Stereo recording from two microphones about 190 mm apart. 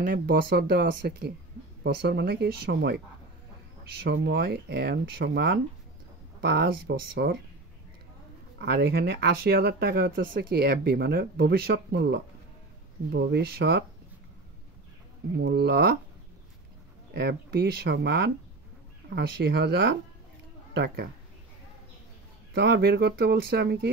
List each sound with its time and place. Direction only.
0.0 s speech: 50° right (ahead or behind)
8.5 s speech: 60° right (ahead or behind)
15.3 s speech: 65° right (ahead or behind)
17.1 s speech: 60° right (ahead or behind)
22.5 s speech: 60° right (ahead or behind)